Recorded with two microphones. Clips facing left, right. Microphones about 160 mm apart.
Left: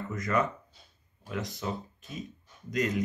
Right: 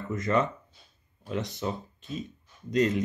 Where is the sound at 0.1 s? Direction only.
25° right (ahead or behind).